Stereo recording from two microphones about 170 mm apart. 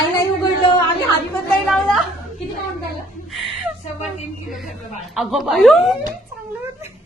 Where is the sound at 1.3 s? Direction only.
Centre (ahead or behind).